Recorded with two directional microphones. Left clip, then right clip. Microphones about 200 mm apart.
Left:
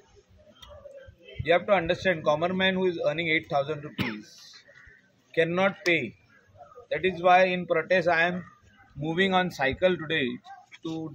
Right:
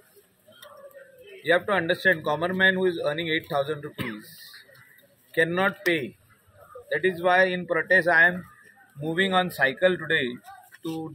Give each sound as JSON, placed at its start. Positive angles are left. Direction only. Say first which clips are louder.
{"t": 1.4, "sound": "speech", "louder": "even", "side_deg": -5}
{"t": 3.9, "sound": "speech", "louder": "left 1 dB", "side_deg": 55}
{"t": 4.2, "sound": "a sound", "louder": "right 2 dB", "side_deg": 0}
{"t": 5.3, "sound": "speech", "louder": "right 1 dB", "side_deg": 0}